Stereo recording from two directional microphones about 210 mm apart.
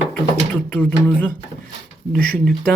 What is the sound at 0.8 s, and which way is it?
Speech, 5° left (ahead or behind).